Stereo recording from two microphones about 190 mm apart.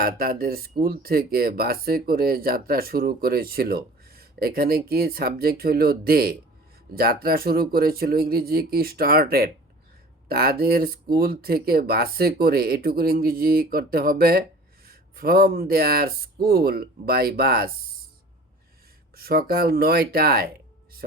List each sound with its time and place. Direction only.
0.0 s speech: 50° right (ahead or behind)
19.1 s speech: 55° right (ahead or behind)